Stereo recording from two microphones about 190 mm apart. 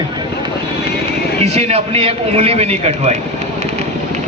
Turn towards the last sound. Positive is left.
turn(degrees=-35)  # may be behind; listen again after turning